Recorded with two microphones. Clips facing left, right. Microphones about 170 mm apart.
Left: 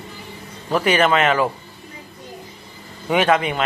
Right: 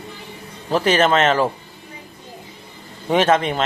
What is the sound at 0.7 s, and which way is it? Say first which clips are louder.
Speech: right 1 dB; 35° right (ahead or behind).